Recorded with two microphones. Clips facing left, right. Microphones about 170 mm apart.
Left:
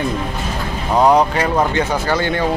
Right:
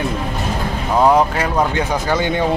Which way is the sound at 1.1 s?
Centre (ahead or behind).